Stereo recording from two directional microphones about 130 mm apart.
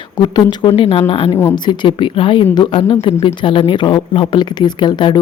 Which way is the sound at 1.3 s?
20° left (ahead or behind).